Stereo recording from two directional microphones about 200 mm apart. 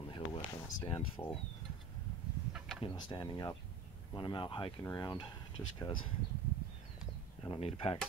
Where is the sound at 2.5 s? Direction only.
Centre (ahead or behind).